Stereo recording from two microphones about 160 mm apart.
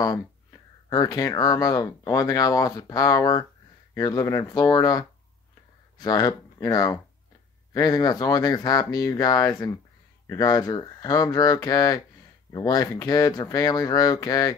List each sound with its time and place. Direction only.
0.0 s speech: 20° left (ahead or behind)